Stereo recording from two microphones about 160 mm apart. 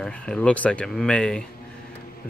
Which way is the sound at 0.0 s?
5° left (ahead or behind).